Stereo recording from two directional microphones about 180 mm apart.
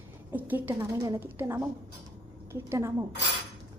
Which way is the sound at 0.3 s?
10° right (ahead or behind).